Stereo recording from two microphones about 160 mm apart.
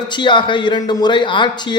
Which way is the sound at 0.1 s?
30° left (ahead or behind).